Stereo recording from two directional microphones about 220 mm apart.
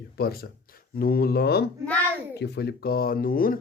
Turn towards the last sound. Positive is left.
turn(degrees=40)  # may be behind; listen again after turning